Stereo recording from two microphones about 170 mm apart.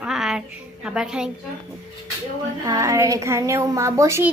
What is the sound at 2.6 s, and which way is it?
A woman's voice, 20° right (ahead or behind).